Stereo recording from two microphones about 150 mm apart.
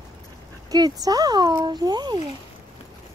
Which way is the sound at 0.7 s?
25° right (ahead or behind).